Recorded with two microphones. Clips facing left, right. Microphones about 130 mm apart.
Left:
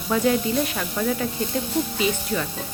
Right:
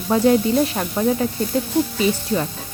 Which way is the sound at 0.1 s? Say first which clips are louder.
Right 5 dB; 35° right (ahead or behind).